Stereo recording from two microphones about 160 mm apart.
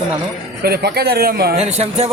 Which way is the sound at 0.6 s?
80° right.